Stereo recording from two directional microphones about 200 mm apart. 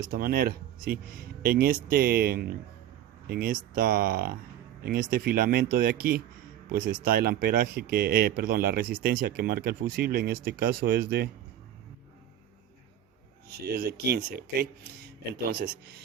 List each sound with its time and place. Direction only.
0.0 s speech: 45° right (ahead or behind)
13.5 s speech: 50° right (ahead or behind)